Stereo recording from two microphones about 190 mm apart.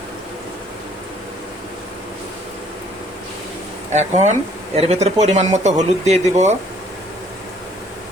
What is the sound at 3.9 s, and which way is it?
Speech, 35° right (ahead or behind).